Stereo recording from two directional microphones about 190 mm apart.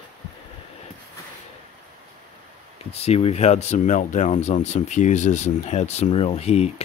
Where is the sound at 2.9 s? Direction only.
30° left (ahead or behind).